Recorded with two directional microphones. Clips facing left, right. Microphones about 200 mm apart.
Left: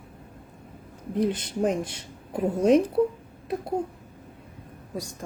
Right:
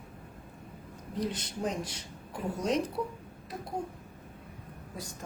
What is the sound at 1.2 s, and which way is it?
A woman's voice, 55° left (ahead or behind).